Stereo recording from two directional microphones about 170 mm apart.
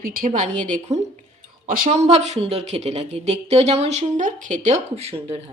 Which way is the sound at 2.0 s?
40° right (ahead or behind).